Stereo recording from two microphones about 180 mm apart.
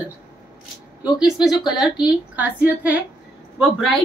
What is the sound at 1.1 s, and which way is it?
A woman's voice, 5° right (ahead or behind).